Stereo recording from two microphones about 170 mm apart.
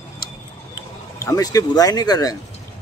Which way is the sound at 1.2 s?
20° left (ahead or behind).